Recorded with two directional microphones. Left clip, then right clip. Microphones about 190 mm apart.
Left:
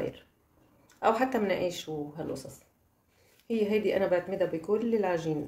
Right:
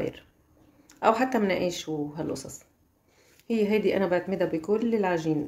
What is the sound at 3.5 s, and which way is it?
A woman's voice, 30° right (ahead or behind).